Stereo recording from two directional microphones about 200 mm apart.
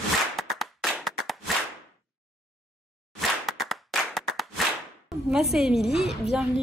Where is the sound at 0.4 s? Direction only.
Centre (ahead or behind).